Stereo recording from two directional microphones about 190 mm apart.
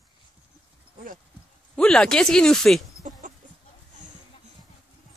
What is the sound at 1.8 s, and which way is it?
Speech, 5° left (ahead or behind).